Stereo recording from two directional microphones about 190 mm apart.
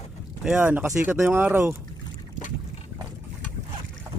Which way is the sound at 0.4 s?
5° right (ahead or behind).